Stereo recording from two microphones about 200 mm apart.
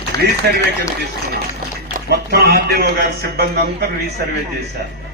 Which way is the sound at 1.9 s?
50° right (ahead or behind).